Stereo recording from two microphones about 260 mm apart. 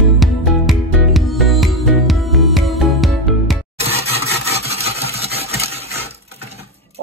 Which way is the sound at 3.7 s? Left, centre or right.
Right.